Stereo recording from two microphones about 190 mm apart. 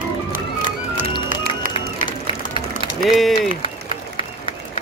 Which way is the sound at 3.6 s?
30° left (ahead or behind).